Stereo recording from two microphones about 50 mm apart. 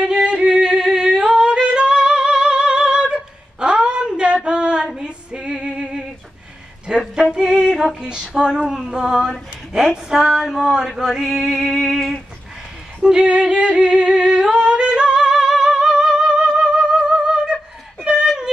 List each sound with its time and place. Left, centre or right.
0.0 s music: centre
2.4 s singing: centre
4.4 s female singing: centre
5.0 s music: centre
6.9 s a sound: centre
7.3 s female singing: centre
8.9 s a sound: centre
13.0 s singing: centre
18.0 s a sound: centre